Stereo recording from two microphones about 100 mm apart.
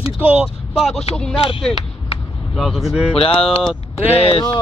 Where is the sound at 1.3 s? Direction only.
70° left (ahead or behind).